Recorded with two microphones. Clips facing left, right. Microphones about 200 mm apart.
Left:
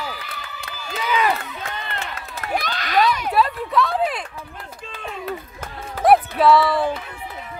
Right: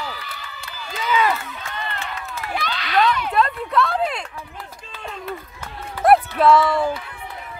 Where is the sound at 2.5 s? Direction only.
45° left (ahead or behind).